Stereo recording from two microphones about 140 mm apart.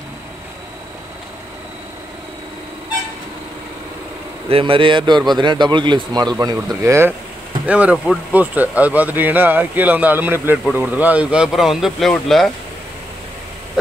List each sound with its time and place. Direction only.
4.5 s speech: 40° right (ahead or behind); by 12.4 s centre (ahead or behind)